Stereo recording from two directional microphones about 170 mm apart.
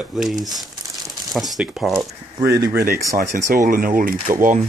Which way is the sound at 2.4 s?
20° right (ahead or behind).